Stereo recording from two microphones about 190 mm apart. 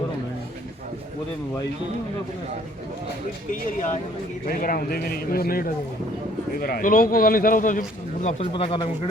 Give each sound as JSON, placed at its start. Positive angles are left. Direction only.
{"t": 4.4, "sound": "a man's voice", "side_deg": 50}